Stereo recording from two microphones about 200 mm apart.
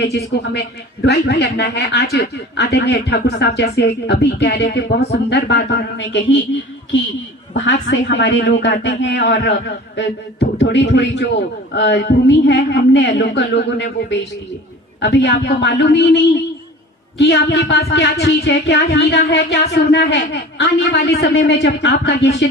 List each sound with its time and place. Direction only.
0.0 s speech: 55° left (ahead or behind)
7.5 s speech: 65° left (ahead or behind)
17.2 s speech: 60° left (ahead or behind)